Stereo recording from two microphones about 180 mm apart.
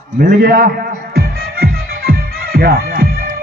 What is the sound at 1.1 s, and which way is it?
Music, 55° right (ahead or behind).